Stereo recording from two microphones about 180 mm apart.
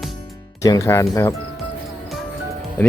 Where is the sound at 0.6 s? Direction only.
20° left (ahead or behind).